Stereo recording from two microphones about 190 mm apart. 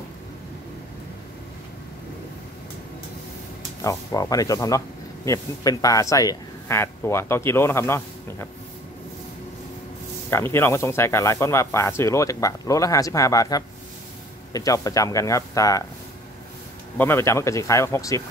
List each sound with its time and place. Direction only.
3.8 s speech: 15° left (ahead or behind)
10.3 s speech: 10° left (ahead or behind)
16.9 s speech: 10° left (ahead or behind)